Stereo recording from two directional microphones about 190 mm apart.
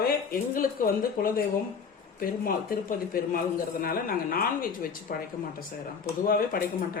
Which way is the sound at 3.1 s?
50° left (ahead or behind).